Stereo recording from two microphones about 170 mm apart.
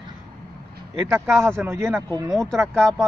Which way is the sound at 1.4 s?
15° right (ahead or behind).